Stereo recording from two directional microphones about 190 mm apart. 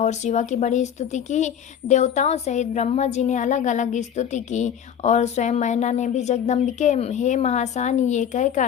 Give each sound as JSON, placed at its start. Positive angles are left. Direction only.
{"t": 0.0, "sound": "a woman's voice", "side_deg": 40}